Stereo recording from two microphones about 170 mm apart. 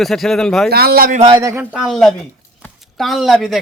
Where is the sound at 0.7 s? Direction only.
65° right (ahead or behind).